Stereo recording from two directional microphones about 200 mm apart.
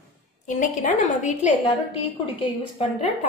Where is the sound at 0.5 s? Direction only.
40° left (ahead or behind).